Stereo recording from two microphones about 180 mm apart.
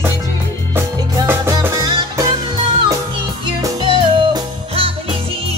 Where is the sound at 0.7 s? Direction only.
15° right (ahead or behind).